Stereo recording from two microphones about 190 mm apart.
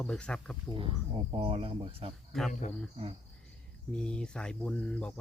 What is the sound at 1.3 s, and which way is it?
Speech, 30° right (ahead or behind).